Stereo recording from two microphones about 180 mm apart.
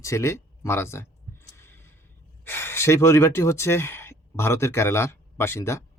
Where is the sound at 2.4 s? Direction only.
15° left (ahead or behind).